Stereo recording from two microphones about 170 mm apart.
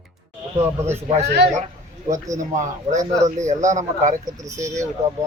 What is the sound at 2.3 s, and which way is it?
Speech, 45° right (ahead or behind).